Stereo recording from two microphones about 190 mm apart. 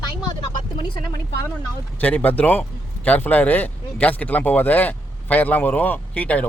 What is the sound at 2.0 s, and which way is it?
Speech, 10° left (ahead or behind).